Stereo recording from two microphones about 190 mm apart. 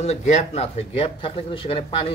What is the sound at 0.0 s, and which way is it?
Speech, 35° left (ahead or behind).